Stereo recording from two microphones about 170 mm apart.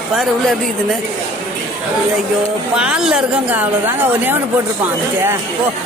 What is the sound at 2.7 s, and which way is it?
A woman's voice, 5° right (ahead or behind).